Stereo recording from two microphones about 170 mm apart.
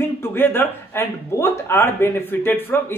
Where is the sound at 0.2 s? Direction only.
15° left (ahead or behind).